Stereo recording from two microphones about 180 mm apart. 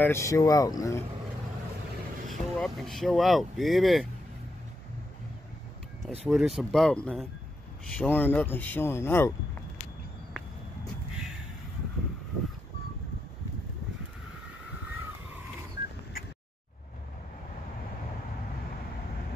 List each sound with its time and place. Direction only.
0.0 s speech: 15° left (ahead or behind)
2.2 s speech: centre (ahead or behind)
6.0 s speech: centre (ahead or behind)